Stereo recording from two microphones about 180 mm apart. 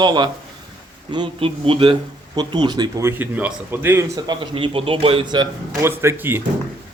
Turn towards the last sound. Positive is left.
turn(degrees=-15)  # may be behind; listen again after turning